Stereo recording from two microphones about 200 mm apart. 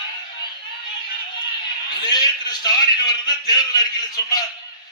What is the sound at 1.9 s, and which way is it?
A man's voice, 20° left (ahead or behind).